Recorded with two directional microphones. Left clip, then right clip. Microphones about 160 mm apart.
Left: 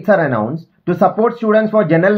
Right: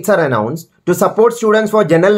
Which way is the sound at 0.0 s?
25° right (ahead or behind).